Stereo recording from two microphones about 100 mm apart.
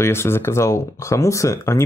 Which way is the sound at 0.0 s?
25° left (ahead or behind).